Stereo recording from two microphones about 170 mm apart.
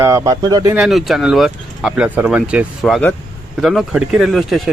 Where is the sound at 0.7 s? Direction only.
Centre (ahead or behind).